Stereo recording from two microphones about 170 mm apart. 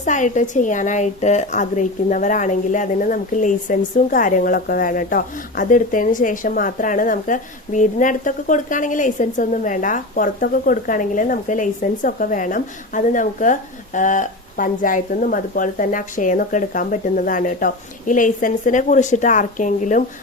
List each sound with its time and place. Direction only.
0.0 s a woman's voice: 45° left (ahead or behind)